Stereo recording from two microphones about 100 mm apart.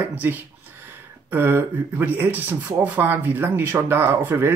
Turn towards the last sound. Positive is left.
turn(degrees=-20)  # may be behind; listen again after turning